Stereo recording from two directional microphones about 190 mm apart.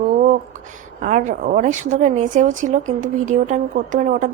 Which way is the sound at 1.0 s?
40° right (ahead or behind).